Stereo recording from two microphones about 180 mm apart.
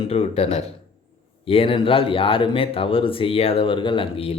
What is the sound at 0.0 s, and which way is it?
Speech, 35° left (ahead or behind).